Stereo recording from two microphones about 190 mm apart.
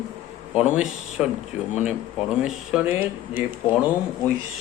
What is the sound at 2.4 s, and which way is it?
Speech, 5° right (ahead or behind).